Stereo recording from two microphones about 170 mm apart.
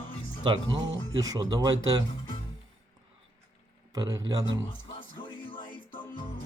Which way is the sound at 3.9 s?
25° right (ahead or behind).